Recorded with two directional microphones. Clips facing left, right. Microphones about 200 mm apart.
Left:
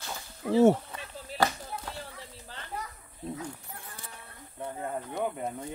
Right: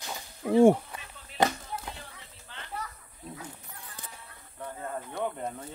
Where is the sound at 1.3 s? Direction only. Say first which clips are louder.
Right 1 dB; 35° left (ahead or behind).